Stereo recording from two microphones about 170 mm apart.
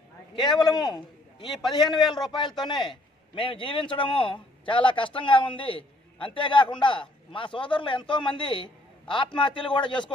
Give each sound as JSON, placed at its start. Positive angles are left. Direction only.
{"t": 0.4, "sound": "a man's voice", "side_deg": 25}